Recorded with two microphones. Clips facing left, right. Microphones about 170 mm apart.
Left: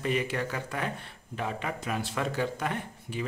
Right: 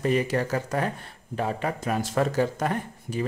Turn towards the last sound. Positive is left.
turn(degrees=-40)  # may be behind; listen again after turning